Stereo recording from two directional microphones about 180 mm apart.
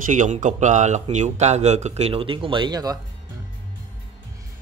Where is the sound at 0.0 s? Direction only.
45° right (ahead or behind); by 3.0 s 20° right (ahead or behind).